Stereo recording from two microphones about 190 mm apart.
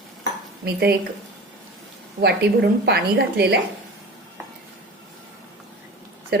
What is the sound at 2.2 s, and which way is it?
A woman's voice, 60° right (ahead or behind).